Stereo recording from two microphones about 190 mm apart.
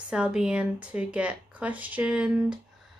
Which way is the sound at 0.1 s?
5° right (ahead or behind).